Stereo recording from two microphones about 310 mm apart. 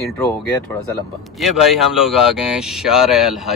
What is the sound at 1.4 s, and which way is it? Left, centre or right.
Speech, centre.